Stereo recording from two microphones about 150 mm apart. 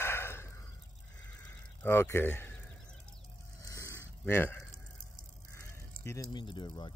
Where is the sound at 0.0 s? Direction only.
15° left (ahead or behind).